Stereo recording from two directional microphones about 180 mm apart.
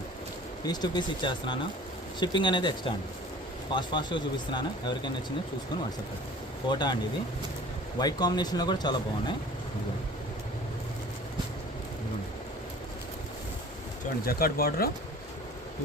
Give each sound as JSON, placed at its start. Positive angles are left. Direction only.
{"t": 0.6, "sound": "speech", "side_deg": 25}
{"t": 6.7, "sound": "speech", "side_deg": 25}
{"t": 7.9, "sound": "speech", "side_deg": 20}
{"t": 14.3, "sound": "speech", "side_deg": 55}